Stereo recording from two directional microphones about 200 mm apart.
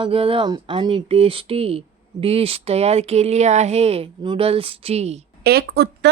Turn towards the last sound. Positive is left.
turn(degrees=-55)  # may be behind; listen again after turning